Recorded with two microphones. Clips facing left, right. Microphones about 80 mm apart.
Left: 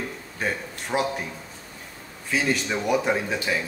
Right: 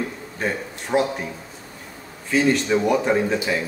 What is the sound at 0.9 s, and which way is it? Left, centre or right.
Speech, centre.